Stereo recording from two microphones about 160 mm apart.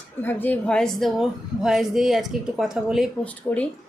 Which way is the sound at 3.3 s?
10° left (ahead or behind).